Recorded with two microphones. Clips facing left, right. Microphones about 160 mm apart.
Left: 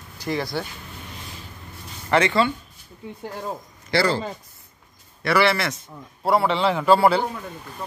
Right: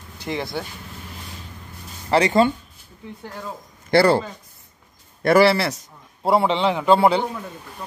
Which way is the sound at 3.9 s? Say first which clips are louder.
Right 6 dB; 60° right (ahead or behind).